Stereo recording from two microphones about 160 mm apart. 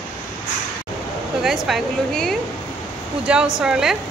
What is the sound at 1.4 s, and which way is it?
Speech, centre (ahead or behind).